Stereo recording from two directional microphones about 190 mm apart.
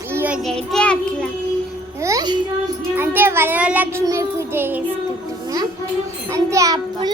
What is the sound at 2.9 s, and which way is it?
A child's voice, 10° right (ahead or behind).